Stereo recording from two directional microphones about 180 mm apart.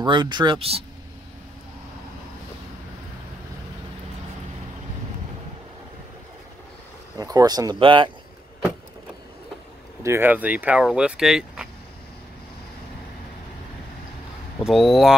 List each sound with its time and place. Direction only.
0.0 s speech: 25° right (ahead or behind)
7.2 s speech: 20° right (ahead or behind)
10.0 s speech: 10° right (ahead or behind)
14.6 s speech: centre (ahead or behind)